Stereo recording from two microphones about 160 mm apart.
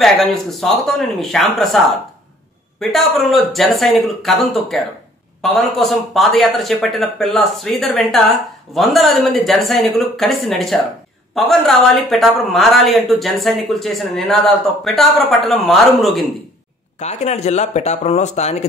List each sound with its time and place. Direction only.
0.0 s a man's voice: centre (ahead or behind)
2.8 s a man's voice: centre (ahead or behind)
17.0 s speech: 45° left (ahead or behind)